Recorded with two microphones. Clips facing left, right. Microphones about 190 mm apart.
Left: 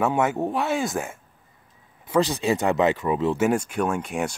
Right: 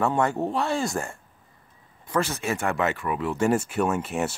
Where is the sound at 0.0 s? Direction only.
5° left (ahead or behind).